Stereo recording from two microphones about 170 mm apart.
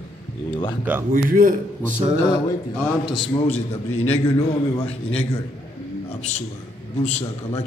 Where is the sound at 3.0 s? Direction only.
30° left (ahead or behind).